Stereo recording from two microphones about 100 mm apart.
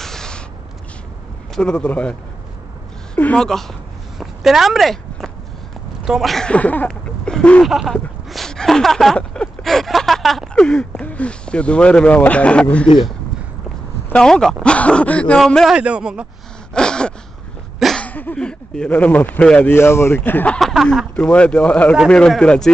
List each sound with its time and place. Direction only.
0.0 s a sound: 5° left (ahead or behind)
1.5 s speech: 10° left (ahead or behind)
3.2 s a woman's voice: 15° left (ahead or behind)
3.4 s speech: 5° left (ahead or behind)
6.9 s a sound: 5° left (ahead or behind)
7.6 s speech: centre (ahead or behind)
14.1 s speech: 5° left (ahead or behind)
15.7 s a man's voice: 10° right (ahead or behind)
16.7 s gasp: 10° left (ahead or behind)
17.7 s a sound: centre (ahead or behind)
18.0 s speech: 15° left (ahead or behind)
19.7 s speech: 25° left (ahead or behind)
20.5 s speech: centre (ahead or behind)
21.3 s speech: 15° left (ahead or behind)